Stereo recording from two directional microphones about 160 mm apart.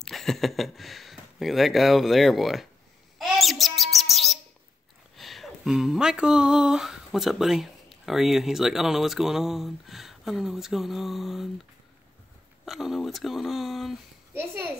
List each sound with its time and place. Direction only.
0.0 s speech: centre (ahead or behind)
3.2 s bird: centre (ahead or behind)
5.1 s speech: centre (ahead or behind)
12.6 s speech: centre (ahead or behind)
14.3 s a child's voice: 15° right (ahead or behind)